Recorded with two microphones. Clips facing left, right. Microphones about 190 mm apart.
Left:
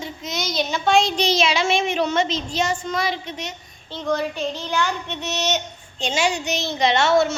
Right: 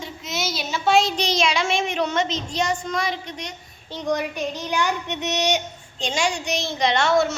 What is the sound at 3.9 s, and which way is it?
Speech, 15° right (ahead or behind).